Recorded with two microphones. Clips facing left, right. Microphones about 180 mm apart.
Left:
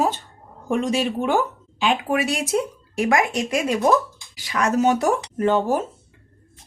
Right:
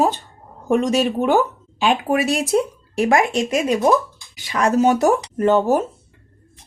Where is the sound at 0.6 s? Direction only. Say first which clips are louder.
Right 4 dB; 45° right (ahead or behind).